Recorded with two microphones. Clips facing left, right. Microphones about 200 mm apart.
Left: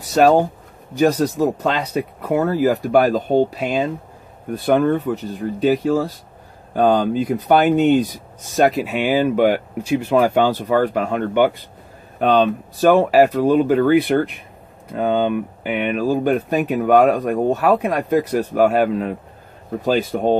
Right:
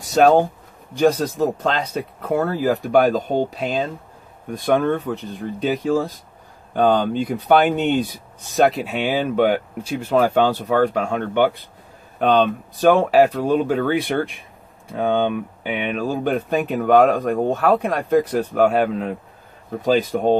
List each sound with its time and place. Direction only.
0.1 s speech: 5° left (ahead or behind)